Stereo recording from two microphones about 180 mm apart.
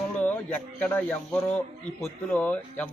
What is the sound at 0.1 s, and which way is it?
A man's voice, 10° left (ahead or behind).